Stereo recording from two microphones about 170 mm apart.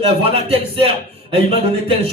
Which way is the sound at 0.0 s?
35° right (ahead or behind).